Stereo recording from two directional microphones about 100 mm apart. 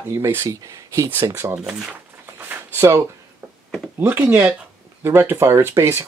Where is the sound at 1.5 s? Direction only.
10° right (ahead or behind).